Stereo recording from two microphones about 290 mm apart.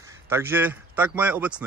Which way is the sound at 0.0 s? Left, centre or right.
Centre.